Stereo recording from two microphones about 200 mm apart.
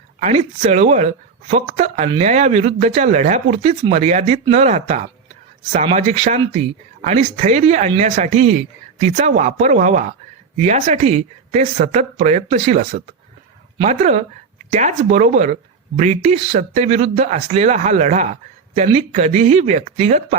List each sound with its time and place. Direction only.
0.2 s speech: 35° right (ahead or behind)